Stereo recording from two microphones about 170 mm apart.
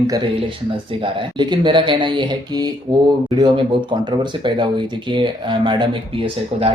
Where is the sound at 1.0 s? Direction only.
30° right (ahead or behind).